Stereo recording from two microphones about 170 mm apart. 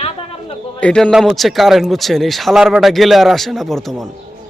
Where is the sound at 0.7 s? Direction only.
5° left (ahead or behind).